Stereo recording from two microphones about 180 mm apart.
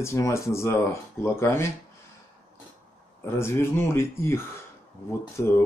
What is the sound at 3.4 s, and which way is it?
Speech, 15° left (ahead or behind).